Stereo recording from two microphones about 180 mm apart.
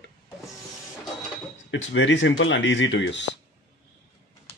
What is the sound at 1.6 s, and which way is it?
Speech, 90° left.